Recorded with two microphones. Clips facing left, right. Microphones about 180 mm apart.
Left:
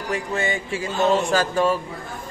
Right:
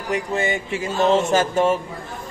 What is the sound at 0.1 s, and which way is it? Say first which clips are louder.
A man's voice: right 3 dB; 20° right (ahead or behind).